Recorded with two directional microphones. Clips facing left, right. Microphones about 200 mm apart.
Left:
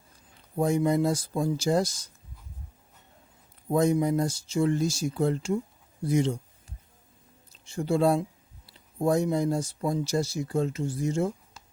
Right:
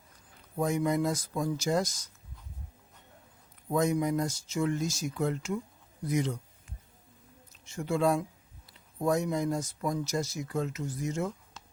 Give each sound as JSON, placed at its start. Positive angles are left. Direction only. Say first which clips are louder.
{"t": 0.5, "sound": "speech", "louder": "left 4 dB", "side_deg": 30}
{"t": 3.7, "sound": "speech", "louder": "left 4 dB", "side_deg": 30}
{"t": 6.1, "sound": "a sound", "louder": "left 5 dB", "side_deg": 30}
{"t": 7.6, "sound": "speech", "louder": "left 4 dB", "side_deg": 30}